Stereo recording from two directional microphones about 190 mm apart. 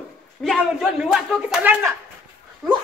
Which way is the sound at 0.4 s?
Centre (ahead or behind).